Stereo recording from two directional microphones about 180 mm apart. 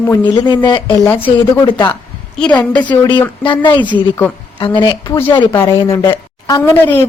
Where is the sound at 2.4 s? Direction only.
5° left (ahead or behind).